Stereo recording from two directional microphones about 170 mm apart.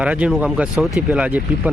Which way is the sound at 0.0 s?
5° right (ahead or behind).